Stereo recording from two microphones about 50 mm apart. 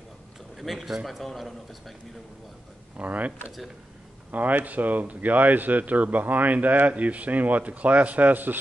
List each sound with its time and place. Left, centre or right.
0.6 s a man's voice: centre
3.0 s speech: right